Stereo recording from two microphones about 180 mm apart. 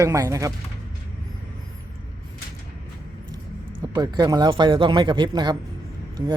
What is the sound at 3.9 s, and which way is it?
A man's voice, 20° right (ahead or behind).